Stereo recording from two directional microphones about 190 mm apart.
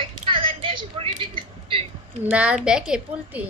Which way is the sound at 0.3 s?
25° right (ahead or behind).